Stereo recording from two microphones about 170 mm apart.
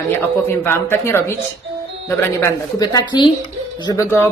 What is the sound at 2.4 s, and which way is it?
Speech, 20° left (ahead or behind).